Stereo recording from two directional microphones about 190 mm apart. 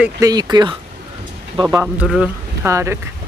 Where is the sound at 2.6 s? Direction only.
15° right (ahead or behind).